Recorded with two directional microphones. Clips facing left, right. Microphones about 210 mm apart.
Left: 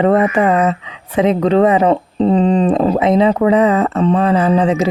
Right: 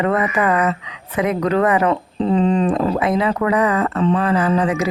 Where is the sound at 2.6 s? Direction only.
25° left (ahead or behind).